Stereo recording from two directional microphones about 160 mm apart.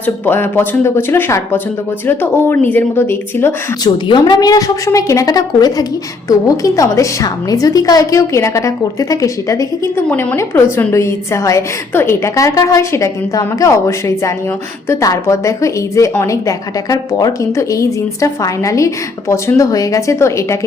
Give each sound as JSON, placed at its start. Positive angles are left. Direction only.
{"t": 0.0, "sound": "speech", "side_deg": 15}
{"t": 3.8, "sound": "a woman's voice", "side_deg": 25}